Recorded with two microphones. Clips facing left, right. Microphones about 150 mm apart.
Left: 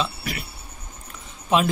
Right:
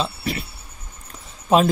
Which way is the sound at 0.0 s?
30° right (ahead or behind).